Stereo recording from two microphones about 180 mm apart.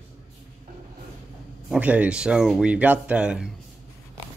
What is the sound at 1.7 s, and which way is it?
Speech, 5° right (ahead or behind).